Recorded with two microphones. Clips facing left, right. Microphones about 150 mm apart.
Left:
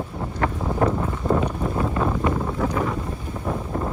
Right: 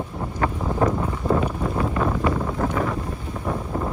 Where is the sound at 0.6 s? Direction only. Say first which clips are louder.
Even; 5° left (ahead or behind).